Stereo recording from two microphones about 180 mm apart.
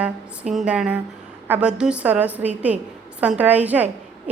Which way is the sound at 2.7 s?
40° right (ahead or behind).